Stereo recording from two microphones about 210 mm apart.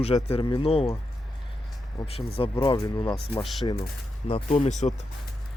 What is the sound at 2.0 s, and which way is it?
Speech, 20° left (ahead or behind).